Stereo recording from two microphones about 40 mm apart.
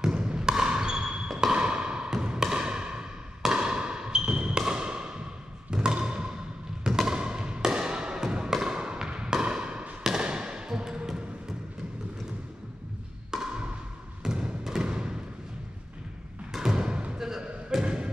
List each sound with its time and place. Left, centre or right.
0.0 s basketball bounce: right
1.3 s a sound: centre
1.6 s basketball bounce: right
2.2 s a sound: right
5.7 s music: right
6.8 s thump: centre
7.2 s music: right
8.5 s basketball bounce: centre
10.2 s thump: right
13.3 s wood block: centre
14.2 s a sound: centre
16.5 s thump: centre